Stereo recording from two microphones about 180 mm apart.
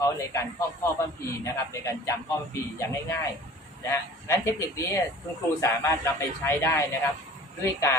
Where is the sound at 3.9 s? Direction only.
15° left (ahead or behind).